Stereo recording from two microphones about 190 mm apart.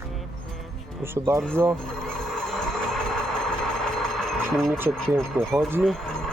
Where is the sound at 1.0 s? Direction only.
15° right (ahead or behind).